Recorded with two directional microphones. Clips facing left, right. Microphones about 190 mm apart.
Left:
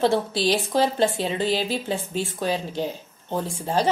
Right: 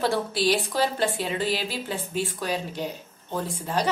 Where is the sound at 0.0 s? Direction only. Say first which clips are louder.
Left 3 dB; 25° left (ahead or behind).